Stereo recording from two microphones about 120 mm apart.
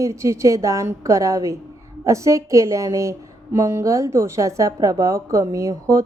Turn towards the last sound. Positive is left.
turn(degrees=-25)  # may be behind; listen again after turning